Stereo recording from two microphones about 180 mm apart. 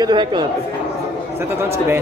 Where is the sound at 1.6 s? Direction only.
15° right (ahead or behind).